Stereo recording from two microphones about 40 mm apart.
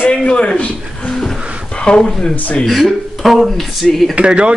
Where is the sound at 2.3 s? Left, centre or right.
Left.